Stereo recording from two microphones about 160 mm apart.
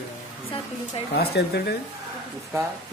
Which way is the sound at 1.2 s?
90° left.